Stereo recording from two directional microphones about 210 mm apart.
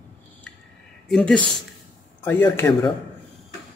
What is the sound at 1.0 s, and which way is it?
Speech, 5° left (ahead or behind).